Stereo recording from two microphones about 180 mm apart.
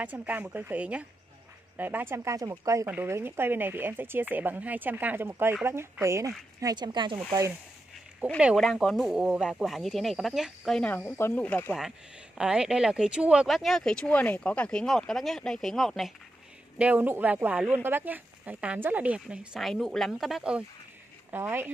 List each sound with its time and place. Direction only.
0.0 s speech: 10° right (ahead or behind); by 7.2 s 25° right (ahead or behind)
8.4 s speech: 5° right (ahead or behind)
12.4 s speech: 5° right (ahead or behind)